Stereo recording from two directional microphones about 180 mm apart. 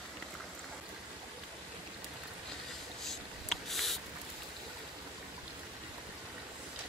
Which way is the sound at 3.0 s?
Centre (ahead or behind).